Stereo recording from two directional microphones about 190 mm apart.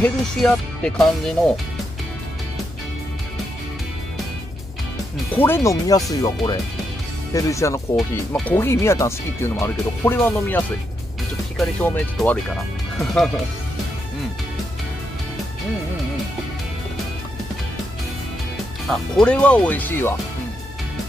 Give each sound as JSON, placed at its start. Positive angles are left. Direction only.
{"t": 0.0, "sound": "speech", "side_deg": 5}
{"t": 5.4, "sound": "speech", "side_deg": 15}
{"t": 18.9, "sound": "speech", "side_deg": 5}